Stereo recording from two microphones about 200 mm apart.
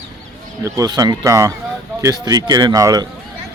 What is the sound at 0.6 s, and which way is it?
Speech, 15° right (ahead or behind).